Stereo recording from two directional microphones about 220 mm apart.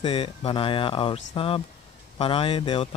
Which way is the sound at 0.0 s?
25° left (ahead or behind).